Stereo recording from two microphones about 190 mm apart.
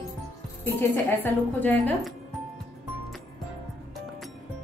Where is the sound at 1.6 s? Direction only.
10° left (ahead or behind).